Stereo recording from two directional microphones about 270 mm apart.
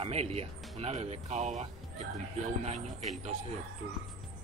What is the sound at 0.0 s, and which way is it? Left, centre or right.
Speech, right.